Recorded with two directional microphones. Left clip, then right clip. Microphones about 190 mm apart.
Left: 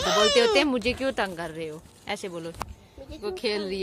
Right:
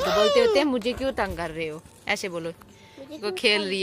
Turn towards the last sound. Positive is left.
turn(degrees=5)  # may be behind; listen again after turning